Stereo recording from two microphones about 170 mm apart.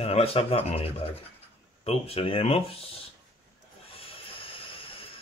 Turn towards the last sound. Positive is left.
turn(degrees=30)  # may be behind; listen again after turning